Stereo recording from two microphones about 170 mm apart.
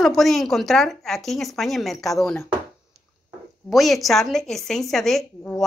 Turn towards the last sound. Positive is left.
turn(degrees=5)  # may be behind; listen again after turning